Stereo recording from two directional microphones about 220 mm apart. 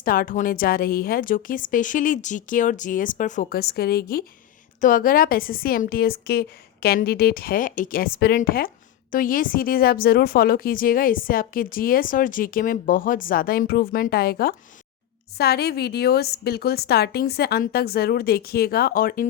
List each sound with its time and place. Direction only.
0.0 s a woman's voice: 40° left (ahead or behind)